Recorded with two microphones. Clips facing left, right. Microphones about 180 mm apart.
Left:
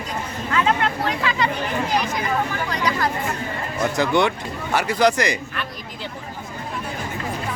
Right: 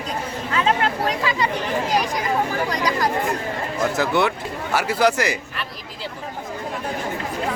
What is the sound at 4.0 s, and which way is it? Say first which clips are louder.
Speech: left 3 dB; 5° right (ahead or behind).